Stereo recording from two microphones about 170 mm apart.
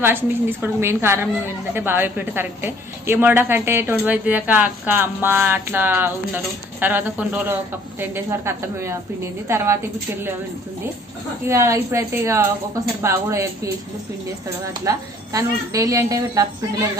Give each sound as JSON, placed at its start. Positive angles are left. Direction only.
{"t": 0.0, "sound": "a woman's voice", "side_deg": -15}
{"t": 11.4, "sound": "a woman's voice", "side_deg": -15}
{"t": 14.7, "sound": "a woman's voice", "side_deg": -20}